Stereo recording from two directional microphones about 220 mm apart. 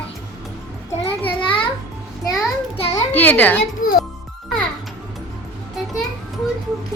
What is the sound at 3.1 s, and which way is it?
Speech, 10° left (ahead or behind).